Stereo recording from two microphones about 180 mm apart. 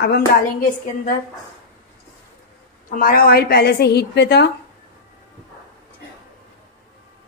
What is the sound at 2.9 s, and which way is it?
Speech, 50° left (ahead or behind).